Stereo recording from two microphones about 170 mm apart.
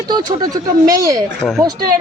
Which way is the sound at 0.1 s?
25° right (ahead or behind).